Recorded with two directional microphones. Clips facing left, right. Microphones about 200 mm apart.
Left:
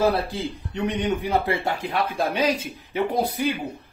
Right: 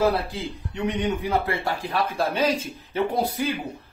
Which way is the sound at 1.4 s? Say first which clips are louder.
Left 2 dB; 20° left (ahead or behind).